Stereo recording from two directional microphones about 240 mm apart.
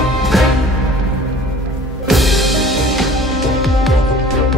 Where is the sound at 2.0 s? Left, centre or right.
Centre.